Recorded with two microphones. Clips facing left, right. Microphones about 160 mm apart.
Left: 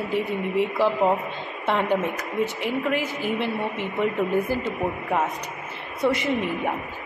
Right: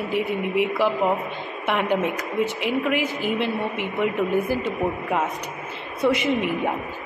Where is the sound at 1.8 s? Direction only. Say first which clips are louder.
Right 2 dB; 20° right (ahead or behind).